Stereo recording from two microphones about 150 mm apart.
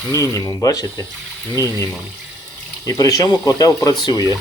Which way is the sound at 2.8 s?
25° left (ahead or behind).